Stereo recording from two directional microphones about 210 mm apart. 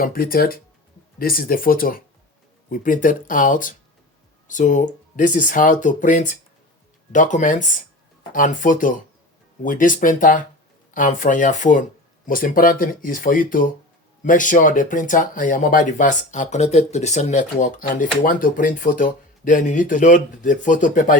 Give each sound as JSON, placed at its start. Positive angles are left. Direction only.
{"t": 0.0, "sound": "speech", "side_deg": 45}